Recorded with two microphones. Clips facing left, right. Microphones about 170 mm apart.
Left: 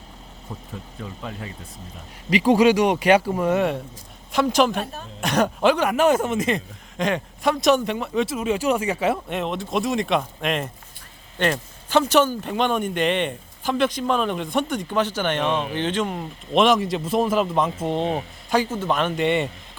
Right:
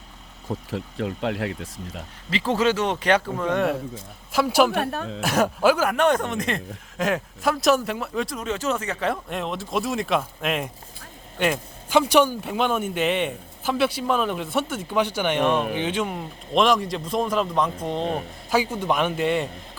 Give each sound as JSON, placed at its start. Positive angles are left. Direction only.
{"t": 0.7, "sound": "speech", "side_deg": -75}
{"t": 2.3, "sound": "speech", "side_deg": 15}
{"t": 4.3, "sound": "speech", "side_deg": -5}
{"t": 4.7, "sound": "speech", "side_deg": -65}
{"t": 5.2, "sound": "a man's voice", "side_deg": -5}
{"t": 18.5, "sound": "a man's voice", "side_deg": -10}